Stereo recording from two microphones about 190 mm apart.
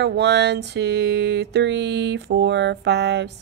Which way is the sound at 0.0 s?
65° right (ahead or behind).